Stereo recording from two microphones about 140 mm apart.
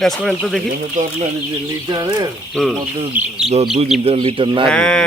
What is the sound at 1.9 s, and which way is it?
Speech, 30° right (ahead or behind).